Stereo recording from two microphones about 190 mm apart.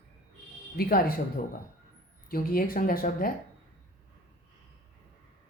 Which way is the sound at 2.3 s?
50° left (ahead or behind).